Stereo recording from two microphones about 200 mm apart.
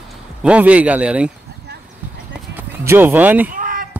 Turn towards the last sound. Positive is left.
turn(degrees=-45)  # may be behind; listen again after turning